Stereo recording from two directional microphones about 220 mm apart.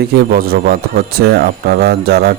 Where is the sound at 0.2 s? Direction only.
40° right (ahead or behind).